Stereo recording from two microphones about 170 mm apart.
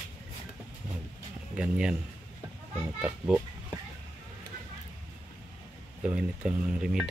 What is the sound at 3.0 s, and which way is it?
Speech, 5° right (ahead or behind).